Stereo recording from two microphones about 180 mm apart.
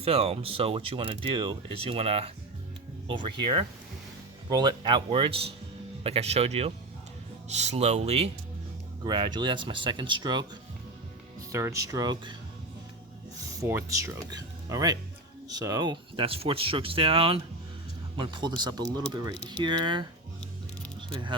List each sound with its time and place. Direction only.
0.0 s speech: 35° right (ahead or behind)
11.5 s speech: 15° right (ahead or behind)
13.4 s speech: 15° right (ahead or behind)
21.1 s speech: 25° right (ahead or behind)